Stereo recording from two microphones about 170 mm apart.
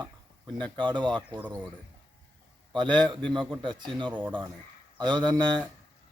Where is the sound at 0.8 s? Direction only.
25° right (ahead or behind).